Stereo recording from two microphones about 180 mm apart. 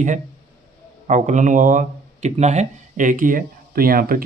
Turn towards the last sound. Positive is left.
turn(degrees=-55)  # may be behind; listen again after turning